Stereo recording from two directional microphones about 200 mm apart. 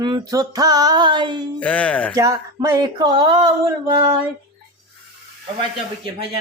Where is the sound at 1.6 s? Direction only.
5° left (ahead or behind).